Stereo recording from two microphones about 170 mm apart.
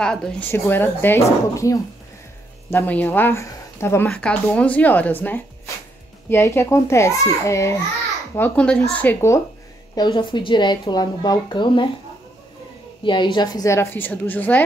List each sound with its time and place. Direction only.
0.0 s speech: 5° left (ahead or behind)
8.4 s speech: 5° left (ahead or behind)
9.9 s a woman's voice: 25° left (ahead or behind)
13.0 s speech: 25° left (ahead or behind); by 14.6 s 10° left (ahead or behind)